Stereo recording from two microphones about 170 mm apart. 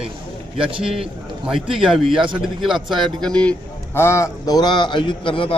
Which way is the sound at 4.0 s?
15° left (ahead or behind).